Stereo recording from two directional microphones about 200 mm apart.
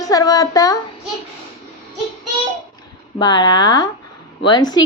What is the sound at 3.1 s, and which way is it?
Speech, 20° left (ahead or behind).